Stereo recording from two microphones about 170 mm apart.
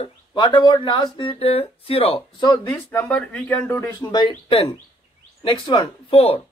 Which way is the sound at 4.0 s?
25° left (ahead or behind).